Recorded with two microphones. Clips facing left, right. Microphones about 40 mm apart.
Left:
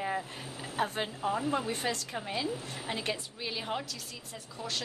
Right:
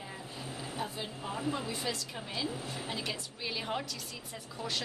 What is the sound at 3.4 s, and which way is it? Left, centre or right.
Speech, centre.